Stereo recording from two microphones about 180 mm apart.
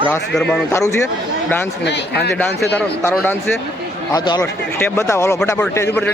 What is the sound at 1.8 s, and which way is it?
Speech, 70° left (ahead or behind).